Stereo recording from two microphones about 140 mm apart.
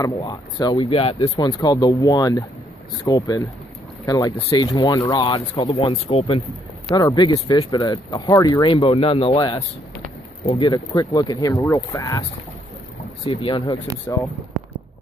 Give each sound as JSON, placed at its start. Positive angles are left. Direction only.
{"t": 0.2, "sound": "speech", "side_deg": 30}
{"t": 0.8, "sound": "speech", "side_deg": 45}
{"t": 1.4, "sound": "speech", "side_deg": 25}
{"t": 5.8, "sound": "speech", "side_deg": 45}
{"t": 6.9, "sound": "speech", "side_deg": 25}
{"t": 8.8, "sound": "speech", "side_deg": 40}
{"t": 10.4, "sound": "speech", "side_deg": 50}
{"t": 10.7, "sound": "speech", "side_deg": 25}
{"t": 13.2, "sound": "speech", "side_deg": 35}
{"t": 14.0, "sound": "speech", "side_deg": 15}